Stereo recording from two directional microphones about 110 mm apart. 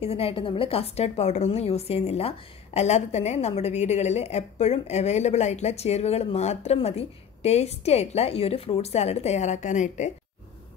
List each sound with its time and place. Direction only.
0.0 s a woman's voice: 60° left (ahead or behind); by 10.1 s 90° left